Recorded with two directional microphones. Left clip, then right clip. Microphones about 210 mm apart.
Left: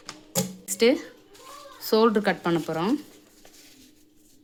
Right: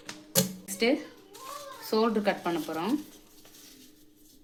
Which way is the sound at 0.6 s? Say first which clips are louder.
Left 9 dB; 40° left (ahead or behind).